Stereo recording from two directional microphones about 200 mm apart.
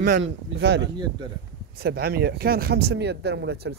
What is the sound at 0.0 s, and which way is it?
A man's voice, 60° right (ahead or behind).